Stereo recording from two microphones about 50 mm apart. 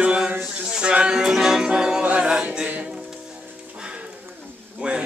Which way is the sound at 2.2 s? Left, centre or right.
Centre.